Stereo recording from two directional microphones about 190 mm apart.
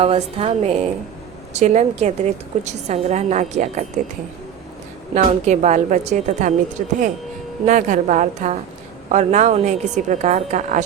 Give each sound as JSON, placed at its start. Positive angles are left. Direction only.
{"t": 0.0, "sound": "a woman's voice", "side_deg": -30}
{"t": 5.1, "sound": "a woman's voice", "side_deg": -40}